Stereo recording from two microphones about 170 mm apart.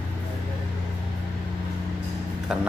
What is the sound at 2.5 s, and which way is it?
Music, 5° right (ahead or behind).